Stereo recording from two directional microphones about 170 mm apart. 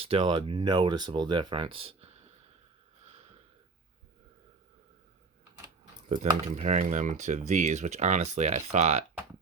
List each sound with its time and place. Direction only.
0.0 s speech: 30° right (ahead or behind)
6.1 s speech: 40° right (ahead or behind)